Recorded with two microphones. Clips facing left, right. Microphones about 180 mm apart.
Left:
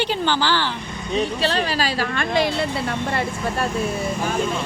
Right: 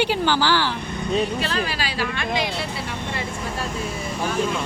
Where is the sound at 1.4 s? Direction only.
30° left (ahead or behind); by 3.7 s 60° left (ahead or behind).